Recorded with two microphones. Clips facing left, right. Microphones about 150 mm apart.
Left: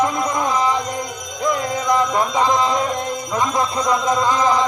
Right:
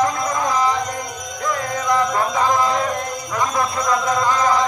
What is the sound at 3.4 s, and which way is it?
Speech, 20° left (ahead or behind).